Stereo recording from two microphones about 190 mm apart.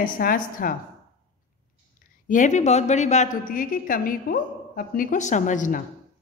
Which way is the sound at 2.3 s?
40° left (ahead or behind).